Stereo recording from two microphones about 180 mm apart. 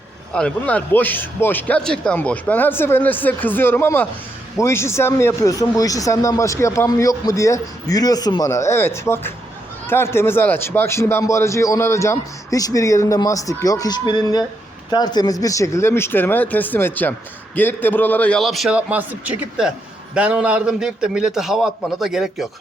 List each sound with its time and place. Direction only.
0.3 s a man's voice: 5° left (ahead or behind)